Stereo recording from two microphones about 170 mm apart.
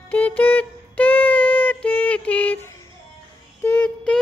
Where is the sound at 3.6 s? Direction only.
10° left (ahead or behind).